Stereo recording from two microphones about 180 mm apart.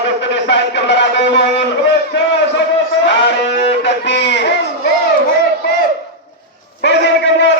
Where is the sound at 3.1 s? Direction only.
75° left (ahead or behind).